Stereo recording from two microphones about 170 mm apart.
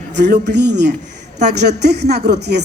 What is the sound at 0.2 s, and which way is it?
Speech, 90° right.